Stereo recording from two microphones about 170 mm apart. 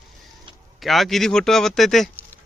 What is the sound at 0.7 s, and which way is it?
A man's voice, centre (ahead or behind).